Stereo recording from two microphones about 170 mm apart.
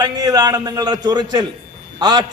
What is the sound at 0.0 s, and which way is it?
A man's voice, 20° right (ahead or behind).